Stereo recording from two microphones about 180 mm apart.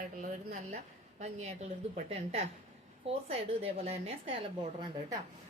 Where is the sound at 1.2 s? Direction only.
35° right (ahead or behind).